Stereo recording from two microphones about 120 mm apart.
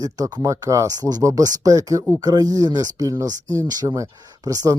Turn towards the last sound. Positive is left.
turn(degrees=-30)  # may be behind; listen again after turning